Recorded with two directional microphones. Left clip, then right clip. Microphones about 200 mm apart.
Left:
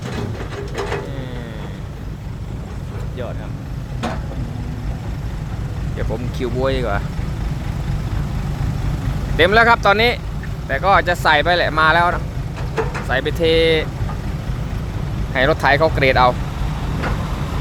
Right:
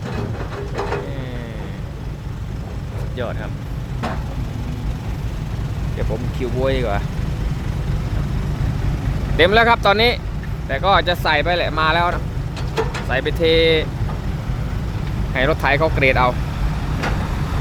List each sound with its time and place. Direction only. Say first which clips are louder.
0.8 s printer: even; 55° left (ahead or behind)
6.4 s speech: even; 5° left (ahead or behind)
9.3 s speech: left 1 dB; centre (ahead or behind)
12.7 s vehicle: even; 20° right (ahead or behind)
13.1 s speech: even; 5° left (ahead or behind)
15.3 s speech: left 3 dB; 5° left (ahead or behind)